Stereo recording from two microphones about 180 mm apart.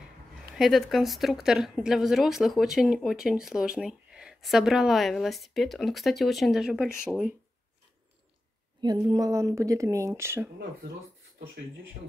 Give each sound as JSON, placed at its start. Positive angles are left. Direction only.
{"t": 0.6, "sound": "a woman's voice", "side_deg": 0}
{"t": 8.8, "sound": "a woman's voice", "side_deg": -25}